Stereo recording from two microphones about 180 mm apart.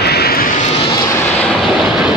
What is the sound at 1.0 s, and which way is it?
Vehicle, 15° left (ahead or behind).